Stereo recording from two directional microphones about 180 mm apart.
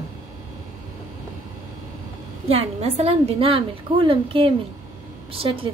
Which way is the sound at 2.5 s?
35° right (ahead or behind).